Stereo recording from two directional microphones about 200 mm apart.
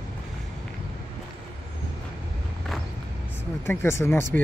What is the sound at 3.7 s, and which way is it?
Speech, 10° left (ahead or behind).